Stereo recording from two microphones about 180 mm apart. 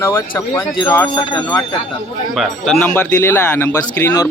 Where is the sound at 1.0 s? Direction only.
25° left (ahead or behind).